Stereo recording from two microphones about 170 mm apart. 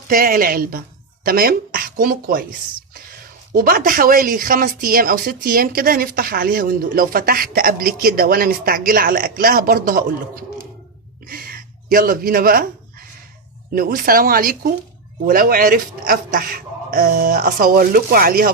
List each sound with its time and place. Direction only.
0.1 s speech: 55° right (ahead or behind)
11.3 s speech: 55° right (ahead or behind)
13.7 s speech: 55° right (ahead or behind)